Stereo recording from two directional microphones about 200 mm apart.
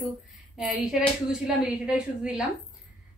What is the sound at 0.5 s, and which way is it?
A woman's voice, centre (ahead or behind).